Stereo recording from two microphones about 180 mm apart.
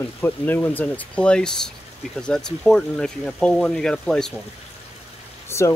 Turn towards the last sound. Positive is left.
turn(degrees=15)  # may be behind; listen again after turning